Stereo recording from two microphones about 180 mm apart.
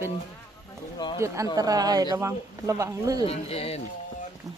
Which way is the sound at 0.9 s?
25° left (ahead or behind).